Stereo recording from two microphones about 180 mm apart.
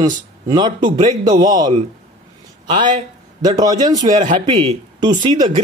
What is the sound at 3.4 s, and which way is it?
Speech, 20° right (ahead or behind).